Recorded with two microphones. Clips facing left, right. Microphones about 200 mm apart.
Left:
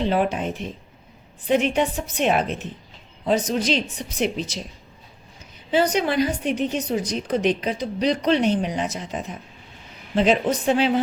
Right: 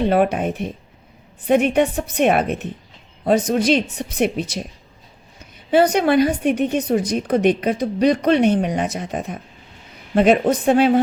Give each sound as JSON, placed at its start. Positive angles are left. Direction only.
{"t": 0.0, "sound": "speech", "side_deg": -60}
{"t": 5.7, "sound": "speech", "side_deg": -55}